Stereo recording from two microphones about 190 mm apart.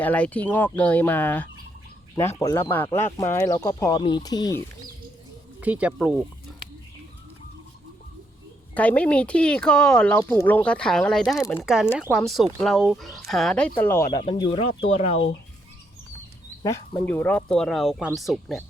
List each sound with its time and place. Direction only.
0.0 s speech: 10° left (ahead or behind)
5.5 s speech: 5° right (ahead or behind)
6.5 s bird: centre (ahead or behind)
8.7 s speech: 10° left (ahead or behind)
14.2 s speech: 25° left (ahead or behind)
16.6 s speech: 10° left (ahead or behind)